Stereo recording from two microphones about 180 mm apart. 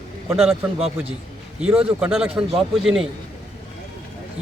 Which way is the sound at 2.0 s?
5° right (ahead or behind).